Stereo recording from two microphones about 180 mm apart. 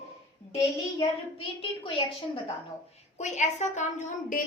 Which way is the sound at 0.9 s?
30° left (ahead or behind).